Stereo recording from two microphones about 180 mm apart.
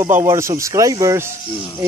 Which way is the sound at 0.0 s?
15° right (ahead or behind).